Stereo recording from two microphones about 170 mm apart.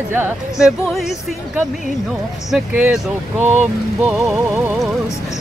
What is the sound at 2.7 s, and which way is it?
Speech, 10° right (ahead or behind).